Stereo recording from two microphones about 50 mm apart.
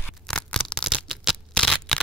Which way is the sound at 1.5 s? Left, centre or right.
Centre.